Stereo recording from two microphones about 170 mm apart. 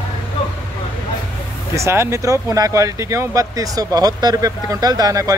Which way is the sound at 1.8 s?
15° right (ahead or behind).